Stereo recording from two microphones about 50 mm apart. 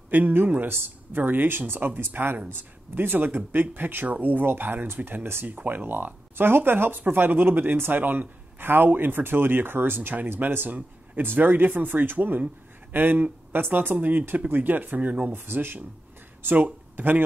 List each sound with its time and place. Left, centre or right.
0.1 s speech: right
2.3 s speech: right
3.0 s speech: right
5.5 s speech: right
15.3 s speech: right